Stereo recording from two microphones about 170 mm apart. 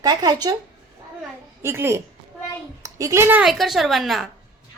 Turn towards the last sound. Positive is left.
turn(degrees=0)  # may be behind; listen again after turning